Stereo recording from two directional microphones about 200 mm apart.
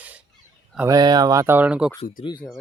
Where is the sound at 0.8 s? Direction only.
20° right (ahead or behind).